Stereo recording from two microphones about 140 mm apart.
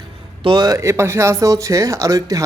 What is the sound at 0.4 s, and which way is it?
Speech, 30° right (ahead or behind).